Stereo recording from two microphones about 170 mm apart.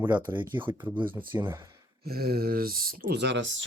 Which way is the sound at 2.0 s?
65° right (ahead or behind).